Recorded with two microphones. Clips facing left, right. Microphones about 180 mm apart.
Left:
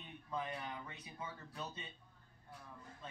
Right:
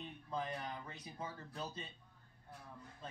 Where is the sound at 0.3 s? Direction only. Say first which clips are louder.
Right 1 dB; 35° right (ahead or behind).